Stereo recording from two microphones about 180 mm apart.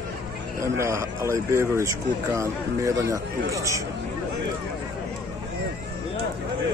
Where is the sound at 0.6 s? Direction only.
15° right (ahead or behind).